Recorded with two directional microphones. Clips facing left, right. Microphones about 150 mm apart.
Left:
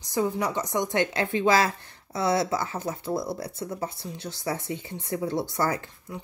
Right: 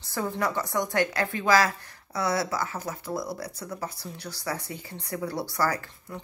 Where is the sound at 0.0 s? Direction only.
15° left (ahead or behind).